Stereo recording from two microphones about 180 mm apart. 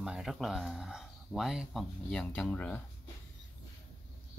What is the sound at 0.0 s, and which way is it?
Speech, 5° right (ahead or behind).